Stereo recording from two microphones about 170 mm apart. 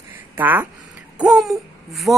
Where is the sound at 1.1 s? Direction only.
Centre (ahead or behind).